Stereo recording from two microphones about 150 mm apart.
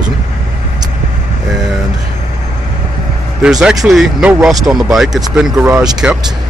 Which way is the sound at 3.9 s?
Centre (ahead or behind).